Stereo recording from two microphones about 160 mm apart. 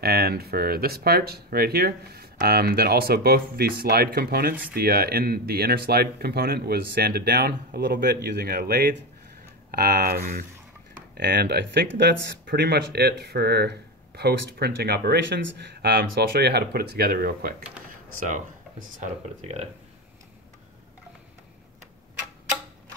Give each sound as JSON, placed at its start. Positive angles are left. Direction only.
{"t": 0.0, "sound": "speech", "side_deg": -75}
{"t": 11.1, "sound": "speech", "side_deg": -90}
{"t": 18.2, "sound": "speech", "side_deg": -55}